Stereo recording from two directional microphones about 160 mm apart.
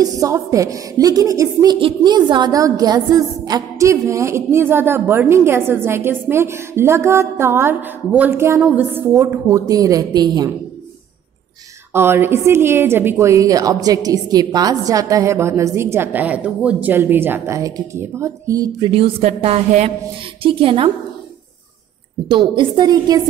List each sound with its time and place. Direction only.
0.0 s a woman's voice: 20° right (ahead or behind)
11.9 s a woman's voice: 15° right (ahead or behind)
18.9 s a woman's voice: 35° right (ahead or behind)
22.3 s a woman's voice: 30° right (ahead or behind)